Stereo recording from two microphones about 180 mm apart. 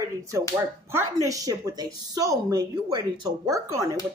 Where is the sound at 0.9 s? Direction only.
20° right (ahead or behind).